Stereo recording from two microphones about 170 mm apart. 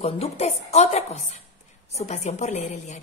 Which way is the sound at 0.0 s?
35° left (ahead or behind).